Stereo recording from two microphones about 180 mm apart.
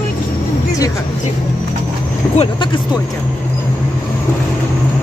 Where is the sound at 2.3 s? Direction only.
25° left (ahead or behind).